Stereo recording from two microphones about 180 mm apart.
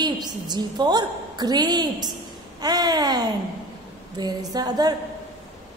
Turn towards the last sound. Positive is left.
turn(degrees=-20)  # may be behind; listen again after turning